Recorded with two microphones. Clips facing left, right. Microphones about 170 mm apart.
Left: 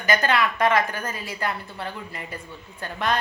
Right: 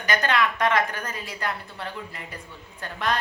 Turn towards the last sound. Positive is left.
turn(degrees=0)  # may be behind; listen again after turning